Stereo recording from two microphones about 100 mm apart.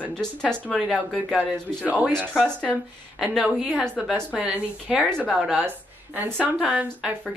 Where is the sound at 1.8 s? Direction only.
15° right (ahead or behind).